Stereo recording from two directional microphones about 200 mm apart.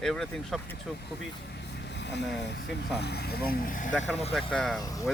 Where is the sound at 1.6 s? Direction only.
60° left (ahead or behind).